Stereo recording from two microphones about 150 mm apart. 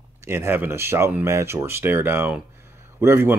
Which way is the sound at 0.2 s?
15° right (ahead or behind).